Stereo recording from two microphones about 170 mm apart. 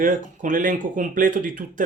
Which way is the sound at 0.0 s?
50° right (ahead or behind).